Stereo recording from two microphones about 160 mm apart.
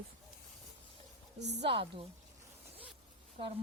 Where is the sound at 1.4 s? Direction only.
90° right.